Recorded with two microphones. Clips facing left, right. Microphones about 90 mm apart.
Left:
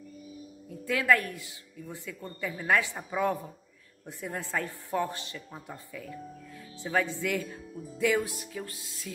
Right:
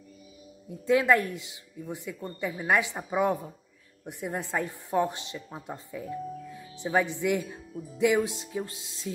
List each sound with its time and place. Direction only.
0.7 s a woman's voice: 20° right (ahead or behind)